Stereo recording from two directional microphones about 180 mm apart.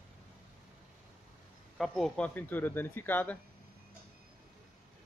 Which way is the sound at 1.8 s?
Centre (ahead or behind).